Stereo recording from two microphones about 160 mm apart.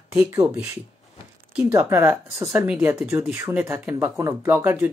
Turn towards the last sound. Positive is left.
turn(degrees=-10)  # may be behind; listen again after turning